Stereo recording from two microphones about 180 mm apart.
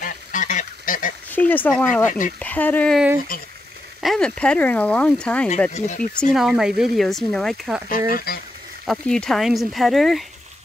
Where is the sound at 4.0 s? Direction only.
5° left (ahead or behind).